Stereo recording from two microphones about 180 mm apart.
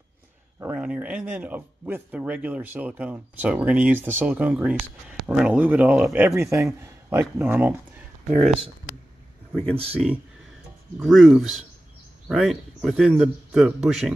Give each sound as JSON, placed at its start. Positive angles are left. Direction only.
{"t": 0.6, "sound": "speech", "side_deg": -5}
{"t": 9.5, "sound": "speech", "side_deg": 5}
{"t": 11.0, "sound": "a man's voice", "side_deg": 0}